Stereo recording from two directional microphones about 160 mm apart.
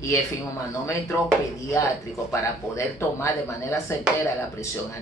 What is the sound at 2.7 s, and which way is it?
Speech, 15° left (ahead or behind).